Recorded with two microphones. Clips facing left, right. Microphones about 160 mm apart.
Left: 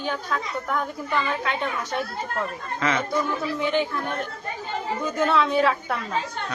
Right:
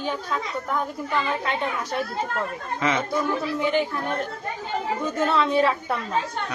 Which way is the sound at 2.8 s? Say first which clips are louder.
Right 1 dB; 20° right (ahead or behind).